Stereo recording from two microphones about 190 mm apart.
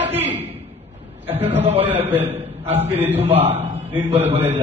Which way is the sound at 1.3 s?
10° right (ahead or behind).